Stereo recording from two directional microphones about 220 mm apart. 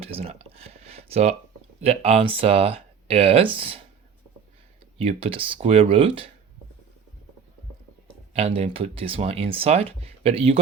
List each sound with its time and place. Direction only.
0.0 s a sound: 25° right (ahead or behind)
1.8 s speech: 25° right (ahead or behind)
4.9 s speech: 25° right (ahead or behind)
8.3 s speech: 30° right (ahead or behind)